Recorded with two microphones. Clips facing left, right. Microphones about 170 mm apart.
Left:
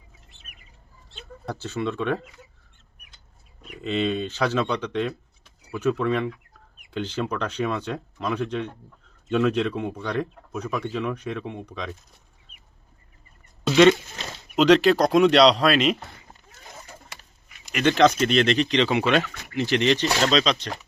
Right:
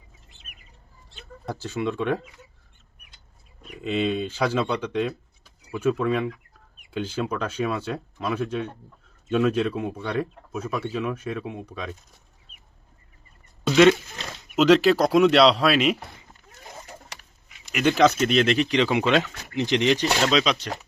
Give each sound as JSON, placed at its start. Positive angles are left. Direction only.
{"t": 1.5, "sound": "speech", "side_deg": -10}
{"t": 3.8, "sound": "speech", "side_deg": -10}
{"t": 13.7, "sound": "speech", "side_deg": 0}
{"t": 17.7, "sound": "speech", "side_deg": -5}